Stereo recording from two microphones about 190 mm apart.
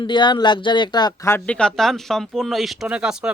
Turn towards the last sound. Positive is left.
turn(degrees=-5)  # may be behind; listen again after turning